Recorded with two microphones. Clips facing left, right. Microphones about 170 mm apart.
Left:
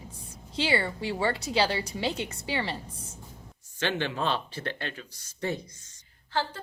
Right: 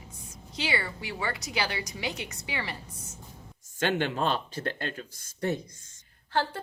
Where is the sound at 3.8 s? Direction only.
50° right (ahead or behind).